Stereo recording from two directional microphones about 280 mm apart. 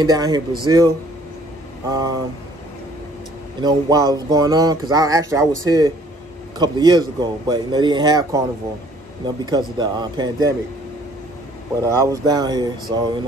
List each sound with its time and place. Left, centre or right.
0.0 s speech: centre
3.6 s speech: centre
11.8 s speech: centre